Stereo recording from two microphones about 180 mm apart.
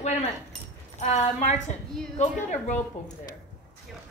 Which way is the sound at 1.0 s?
40° left (ahead or behind).